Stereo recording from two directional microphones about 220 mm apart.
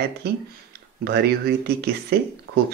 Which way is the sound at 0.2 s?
45° right (ahead or behind).